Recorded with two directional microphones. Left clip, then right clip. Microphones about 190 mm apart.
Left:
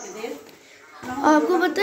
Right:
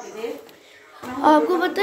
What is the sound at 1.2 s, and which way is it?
Speech, centre (ahead or behind).